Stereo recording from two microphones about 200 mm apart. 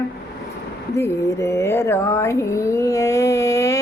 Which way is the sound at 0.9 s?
15° left (ahead or behind).